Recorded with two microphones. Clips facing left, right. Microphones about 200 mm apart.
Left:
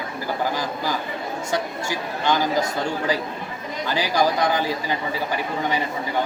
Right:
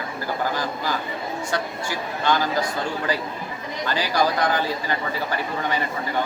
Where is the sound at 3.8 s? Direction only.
15° left (ahead or behind).